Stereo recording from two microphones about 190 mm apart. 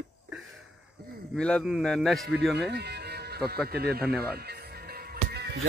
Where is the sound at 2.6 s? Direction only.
60° right (ahead or behind).